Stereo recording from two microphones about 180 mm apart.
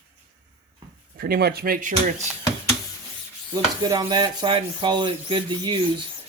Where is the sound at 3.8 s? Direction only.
20° right (ahead or behind).